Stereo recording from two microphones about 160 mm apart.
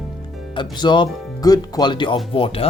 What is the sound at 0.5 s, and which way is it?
Speech, 30° left (ahead or behind).